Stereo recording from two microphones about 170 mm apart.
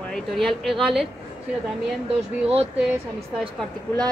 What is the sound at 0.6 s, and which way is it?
Speech, centre (ahead or behind).